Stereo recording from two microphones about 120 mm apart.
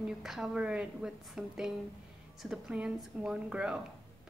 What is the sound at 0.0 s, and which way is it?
A woman's voice, 5° right (ahead or behind).